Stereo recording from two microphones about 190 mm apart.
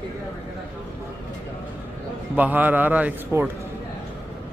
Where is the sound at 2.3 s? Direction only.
10° right (ahead or behind).